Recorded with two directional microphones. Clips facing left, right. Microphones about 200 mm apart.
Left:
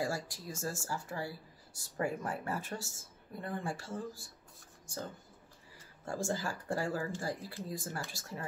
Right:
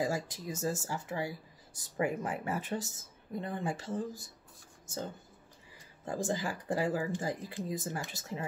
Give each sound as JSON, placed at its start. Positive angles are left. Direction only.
{"t": 0.0, "sound": "speech", "side_deg": -20}